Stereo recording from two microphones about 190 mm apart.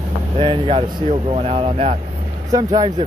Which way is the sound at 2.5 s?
20° right (ahead or behind).